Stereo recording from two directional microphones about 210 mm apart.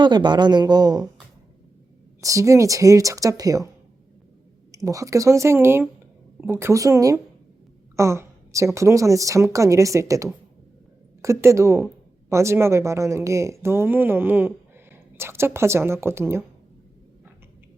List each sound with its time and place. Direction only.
0.0 s speech: 20° right (ahead or behind)
2.2 s a woman's voice: 15° right (ahead or behind)
4.7 s a woman's voice: 15° right (ahead or behind)